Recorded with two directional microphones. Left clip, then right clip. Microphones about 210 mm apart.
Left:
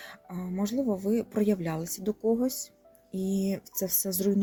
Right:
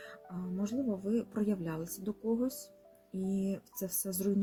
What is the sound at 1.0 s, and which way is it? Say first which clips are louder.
Speech: left 7 dB; 35° left (ahead or behind).